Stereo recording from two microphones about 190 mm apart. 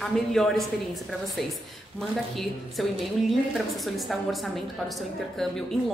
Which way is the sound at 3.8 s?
Centre (ahead or behind).